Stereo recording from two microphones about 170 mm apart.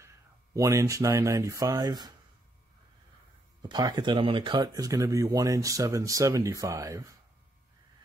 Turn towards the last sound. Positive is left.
turn(degrees=-20)  # may be behind; listen again after turning